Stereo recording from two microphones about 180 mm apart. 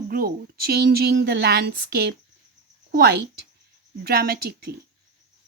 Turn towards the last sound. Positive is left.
turn(degrees=-60)  # may be behind; listen again after turning